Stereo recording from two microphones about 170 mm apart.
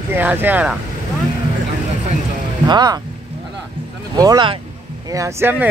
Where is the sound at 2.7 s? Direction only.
25° right (ahead or behind).